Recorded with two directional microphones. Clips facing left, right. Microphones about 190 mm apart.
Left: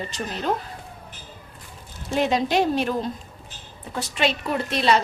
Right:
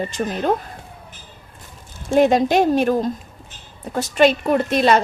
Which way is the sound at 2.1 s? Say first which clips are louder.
Right 7 dB; 50° right (ahead or behind).